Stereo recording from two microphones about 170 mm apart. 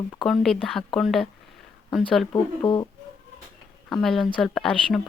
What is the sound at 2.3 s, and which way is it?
Speech, 25° left (ahead or behind).